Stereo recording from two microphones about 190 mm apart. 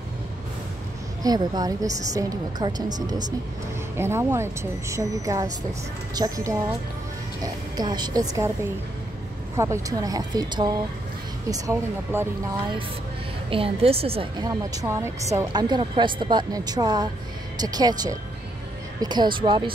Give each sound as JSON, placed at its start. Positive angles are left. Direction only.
{"t": 1.2, "sound": "a woman's voice", "side_deg": -20}
{"t": 9.6, "sound": "a woman's voice", "side_deg": -15}
{"t": 13.5, "sound": "a woman's voice", "side_deg": -30}
{"t": 14.7, "sound": "a woman's voice", "side_deg": -15}